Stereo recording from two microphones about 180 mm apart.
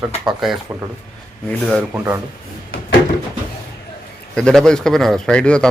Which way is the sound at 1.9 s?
15° right (ahead or behind).